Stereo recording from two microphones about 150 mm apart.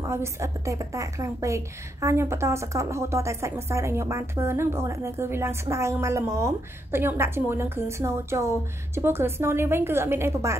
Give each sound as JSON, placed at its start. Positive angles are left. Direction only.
{"t": 0.0, "sound": "a woman's voice", "side_deg": -20}